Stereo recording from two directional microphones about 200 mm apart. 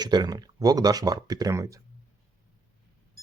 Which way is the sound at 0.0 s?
20° right (ahead or behind).